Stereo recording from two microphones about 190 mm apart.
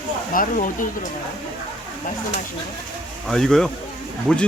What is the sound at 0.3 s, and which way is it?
Speech, 45° left (ahead or behind).